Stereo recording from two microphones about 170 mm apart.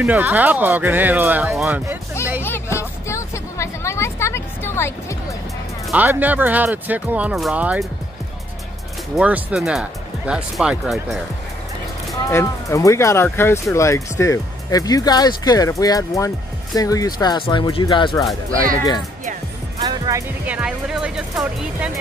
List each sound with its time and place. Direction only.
0.0 s speech: 10° right (ahead or behind)
2.4 s music: 15° left (ahead or behind)
5.9 s speech: 10° right (ahead or behind)
9.1 s speech: 5° right (ahead or behind)
12.3 s speech: 15° left (ahead or behind)
19.8 s speech: 20° right (ahead or behind); by 21.9 s 5° right (ahead or behind)